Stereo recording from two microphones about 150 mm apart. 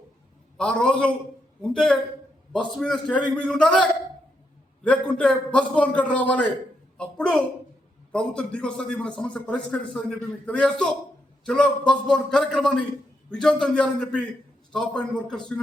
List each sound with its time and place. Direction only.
0.5 s a man's voice: 5° left (ahead or behind)